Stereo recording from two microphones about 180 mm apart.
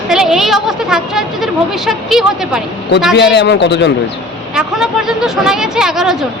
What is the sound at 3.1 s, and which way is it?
Speech, 70° left (ahead or behind).